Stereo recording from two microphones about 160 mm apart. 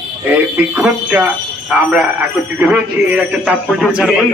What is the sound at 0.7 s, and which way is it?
A man's voice, 10° right (ahead or behind).